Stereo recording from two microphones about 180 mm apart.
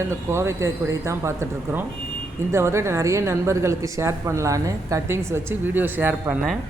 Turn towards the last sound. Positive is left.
turn(degrees=-10)  # may be behind; listen again after turning